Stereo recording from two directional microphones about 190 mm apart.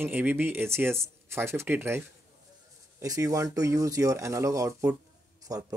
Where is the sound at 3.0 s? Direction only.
15° right (ahead or behind).